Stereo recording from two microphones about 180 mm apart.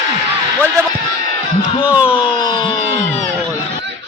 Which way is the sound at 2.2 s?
25° left (ahead or behind).